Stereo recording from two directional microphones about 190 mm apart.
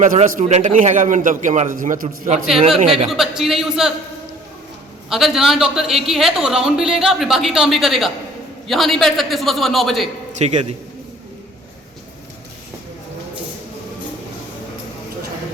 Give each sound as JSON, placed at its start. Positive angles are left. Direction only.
{"t": 0.0, "sound": "a man's voice", "side_deg": -40}
{"t": 2.7, "sound": "speech", "side_deg": -30}
{"t": 3.1, "sound": "speech", "side_deg": 0}
{"t": 5.0, "sound": "speech", "side_deg": 0}
{"t": 10.3, "sound": "speech", "side_deg": -35}